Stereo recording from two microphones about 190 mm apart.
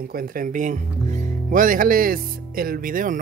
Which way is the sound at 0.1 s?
50° right (ahead or behind).